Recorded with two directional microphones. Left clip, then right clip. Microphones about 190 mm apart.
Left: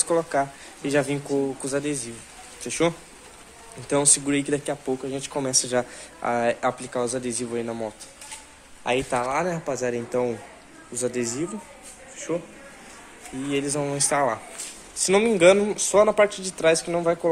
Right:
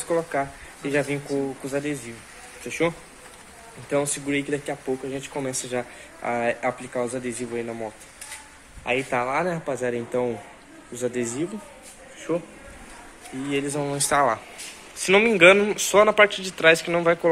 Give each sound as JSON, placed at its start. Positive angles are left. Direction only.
{"t": 0.1, "sound": "speech", "side_deg": 10}
{"t": 3.9, "sound": "speech", "side_deg": 30}
{"t": 9.1, "sound": "speech", "side_deg": 0}
{"t": 13.5, "sound": "speech", "side_deg": 10}
{"t": 13.7, "sound": "speech", "side_deg": 0}